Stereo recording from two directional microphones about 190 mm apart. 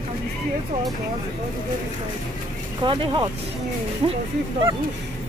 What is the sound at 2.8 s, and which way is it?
Speech, 25° right (ahead or behind).